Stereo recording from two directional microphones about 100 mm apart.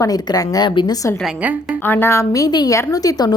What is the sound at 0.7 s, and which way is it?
Speech, 50° left (ahead or behind).